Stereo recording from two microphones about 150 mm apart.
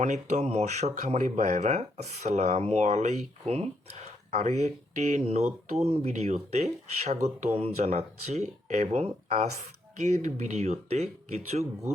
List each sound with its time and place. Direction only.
0.0 s speech: 50° right (ahead or behind)